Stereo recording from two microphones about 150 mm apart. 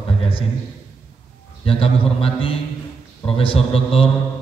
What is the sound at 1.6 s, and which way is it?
A man's voice, 40° left (ahead or behind).